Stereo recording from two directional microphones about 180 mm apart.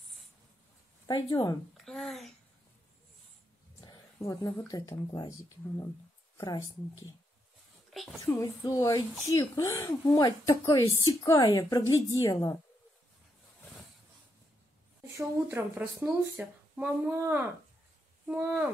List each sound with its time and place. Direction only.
1.0 s speech: 20° left (ahead or behind)
1.9 s a child's voice: centre (ahead or behind)
3.8 s speech: 20° left (ahead or behind)
6.3 s speech: 20° left (ahead or behind)
8.3 s speech: 20° left (ahead or behind)
15.1 s speech: 15° right (ahead or behind)